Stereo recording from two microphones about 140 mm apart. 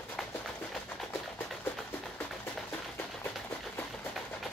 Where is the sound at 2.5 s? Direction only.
15° left (ahead or behind).